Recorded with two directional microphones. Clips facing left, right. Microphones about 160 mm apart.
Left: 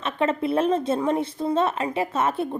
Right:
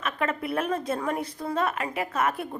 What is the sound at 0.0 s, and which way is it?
Speech, 25° left (ahead or behind).